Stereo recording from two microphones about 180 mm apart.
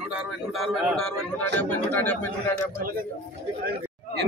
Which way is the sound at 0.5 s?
Centre (ahead or behind).